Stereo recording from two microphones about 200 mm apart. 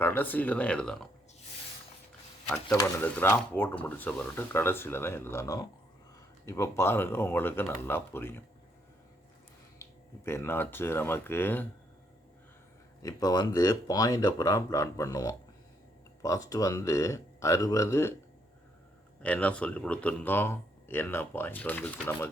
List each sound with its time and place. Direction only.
0.0 s speech: 10° left (ahead or behind)
2.7 s speech: 10° left (ahead or behind)
9.8 s a sound: 15° left (ahead or behind)
10.2 s speech: 10° left (ahead or behind)
13.0 s speech: 15° left (ahead or behind)
19.2 s speech: 5° left (ahead or behind)